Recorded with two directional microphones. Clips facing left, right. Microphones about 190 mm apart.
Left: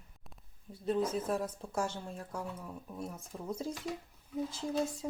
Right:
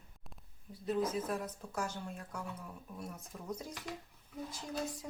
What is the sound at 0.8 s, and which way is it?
Speech, 30° left (ahead or behind).